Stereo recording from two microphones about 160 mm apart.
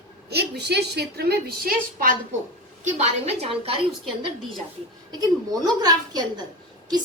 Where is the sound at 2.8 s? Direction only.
45° right (ahead or behind).